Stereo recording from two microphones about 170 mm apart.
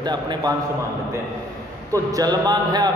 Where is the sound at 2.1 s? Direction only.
25° right (ahead or behind).